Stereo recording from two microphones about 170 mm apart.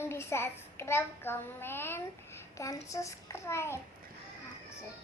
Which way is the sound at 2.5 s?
20° left (ahead or behind).